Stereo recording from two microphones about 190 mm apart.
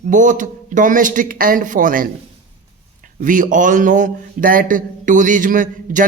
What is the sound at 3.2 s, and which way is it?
Speech, 45° right (ahead or behind).